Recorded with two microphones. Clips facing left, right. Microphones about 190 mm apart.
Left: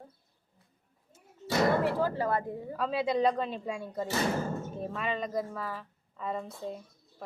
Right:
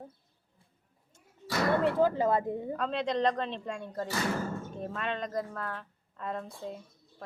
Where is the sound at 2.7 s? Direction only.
5° left (ahead or behind).